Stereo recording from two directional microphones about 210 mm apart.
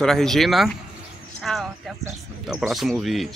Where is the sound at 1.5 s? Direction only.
Centre (ahead or behind).